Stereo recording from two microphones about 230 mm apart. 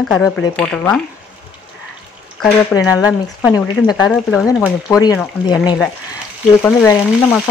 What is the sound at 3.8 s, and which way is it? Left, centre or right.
Speech, centre.